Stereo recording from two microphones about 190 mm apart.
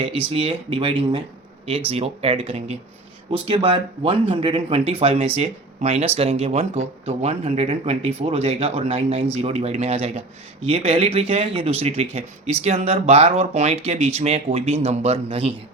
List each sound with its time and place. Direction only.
0.0 s speech: 30° right (ahead or behind)